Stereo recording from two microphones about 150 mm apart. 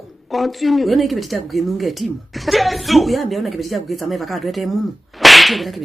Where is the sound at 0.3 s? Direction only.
Centre (ahead or behind).